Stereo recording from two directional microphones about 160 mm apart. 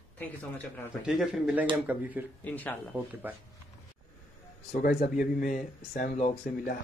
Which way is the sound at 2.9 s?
10° right (ahead or behind).